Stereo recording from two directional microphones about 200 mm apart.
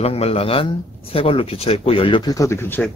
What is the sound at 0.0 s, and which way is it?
Speech, 30° left (ahead or behind).